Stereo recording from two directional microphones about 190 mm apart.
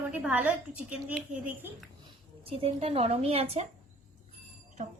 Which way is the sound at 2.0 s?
30° right (ahead or behind).